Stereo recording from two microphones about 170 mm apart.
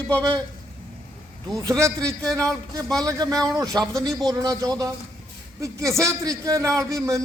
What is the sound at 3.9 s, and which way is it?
Speech, centre (ahead or behind).